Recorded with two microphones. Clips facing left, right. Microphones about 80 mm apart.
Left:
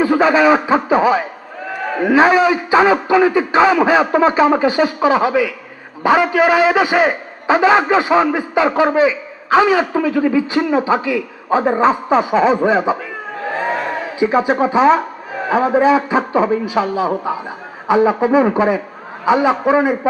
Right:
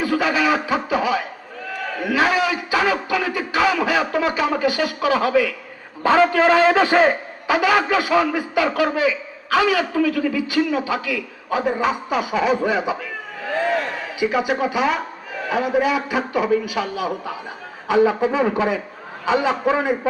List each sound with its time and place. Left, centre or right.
0.0 s a man's voice: left; by 7.2 s centre
7.4 s a man's voice: left
13.5 s crowd: left
14.2 s a man's voice: left